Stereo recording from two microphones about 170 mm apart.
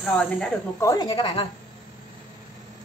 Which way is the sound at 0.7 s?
20° left (ahead or behind).